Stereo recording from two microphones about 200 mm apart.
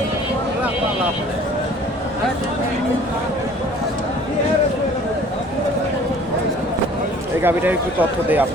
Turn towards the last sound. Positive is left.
turn(degrees=-10)  # may be behind; listen again after turning